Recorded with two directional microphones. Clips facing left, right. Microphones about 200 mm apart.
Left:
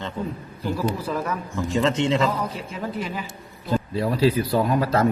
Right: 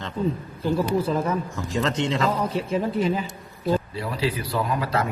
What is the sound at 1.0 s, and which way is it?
Speech, 25° right (ahead or behind).